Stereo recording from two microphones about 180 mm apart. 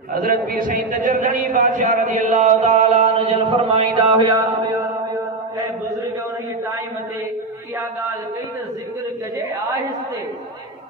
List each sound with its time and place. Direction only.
0.1 s a man's voice: 55° right (ahead or behind); by 4.4 s 25° right (ahead or behind)